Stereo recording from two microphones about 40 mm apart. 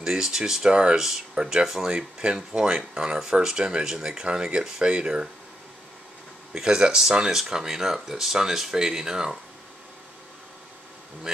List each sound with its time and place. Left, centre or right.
0.0 s speech: centre
6.5 s speech: centre